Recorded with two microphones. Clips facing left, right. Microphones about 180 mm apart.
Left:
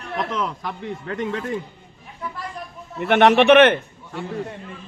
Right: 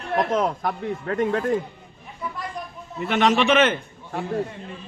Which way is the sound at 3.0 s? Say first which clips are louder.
Left 5 dB; 60° left (ahead or behind).